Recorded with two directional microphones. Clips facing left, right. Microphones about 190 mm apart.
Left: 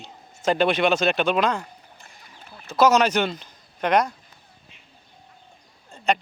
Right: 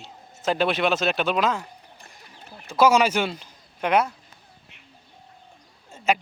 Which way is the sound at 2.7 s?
10° right (ahead or behind).